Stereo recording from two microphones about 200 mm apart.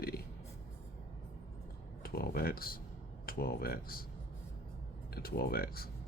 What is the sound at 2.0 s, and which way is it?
Speech, 50° left (ahead or behind).